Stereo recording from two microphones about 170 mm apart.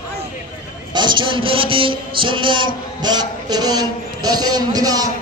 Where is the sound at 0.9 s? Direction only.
25° right (ahead or behind).